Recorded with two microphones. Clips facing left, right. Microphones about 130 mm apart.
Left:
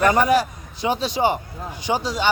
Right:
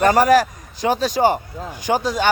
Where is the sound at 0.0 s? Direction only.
35° right (ahead or behind).